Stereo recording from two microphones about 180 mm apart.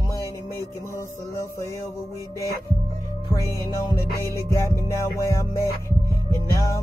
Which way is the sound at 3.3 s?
15° left (ahead or behind).